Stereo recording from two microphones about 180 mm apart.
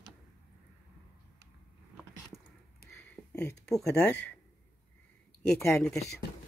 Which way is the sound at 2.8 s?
60° left (ahead or behind).